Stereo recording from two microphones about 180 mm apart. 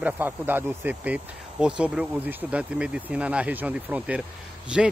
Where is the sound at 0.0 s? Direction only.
10° right (ahead or behind).